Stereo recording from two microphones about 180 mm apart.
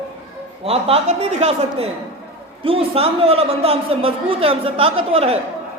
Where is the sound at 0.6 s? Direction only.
35° right (ahead or behind).